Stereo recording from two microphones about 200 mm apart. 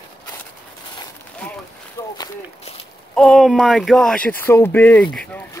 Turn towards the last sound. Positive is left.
turn(degrees=10)  # may be behind; listen again after turning